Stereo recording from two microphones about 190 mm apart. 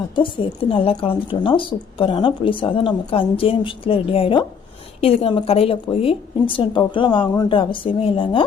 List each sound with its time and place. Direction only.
0.2 s speech: 25° left (ahead or behind)